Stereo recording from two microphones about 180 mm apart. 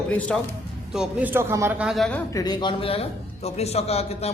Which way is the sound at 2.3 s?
25° left (ahead or behind).